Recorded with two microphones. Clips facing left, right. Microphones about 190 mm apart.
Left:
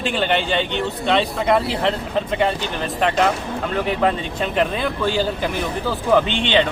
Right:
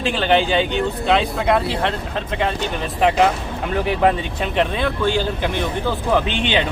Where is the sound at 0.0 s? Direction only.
Centre (ahead or behind).